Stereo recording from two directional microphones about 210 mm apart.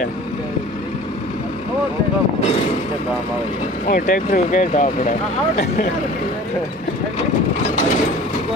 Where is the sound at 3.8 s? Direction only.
40° left (ahead or behind).